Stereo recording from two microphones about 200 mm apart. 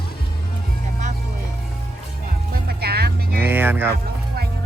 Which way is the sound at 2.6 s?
55° right (ahead or behind).